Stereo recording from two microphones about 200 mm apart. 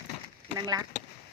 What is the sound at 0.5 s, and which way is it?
Speech, 20° right (ahead or behind).